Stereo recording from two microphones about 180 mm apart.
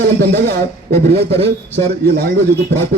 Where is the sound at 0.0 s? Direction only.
65° right (ahead or behind).